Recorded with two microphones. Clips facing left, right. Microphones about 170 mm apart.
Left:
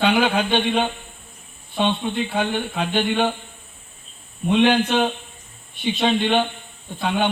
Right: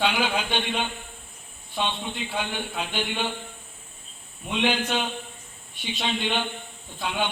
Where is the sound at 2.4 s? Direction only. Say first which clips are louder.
Left 5 dB; 50° left (ahead or behind).